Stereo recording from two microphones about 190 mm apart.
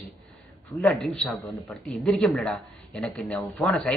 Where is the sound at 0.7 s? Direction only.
5° left (ahead or behind).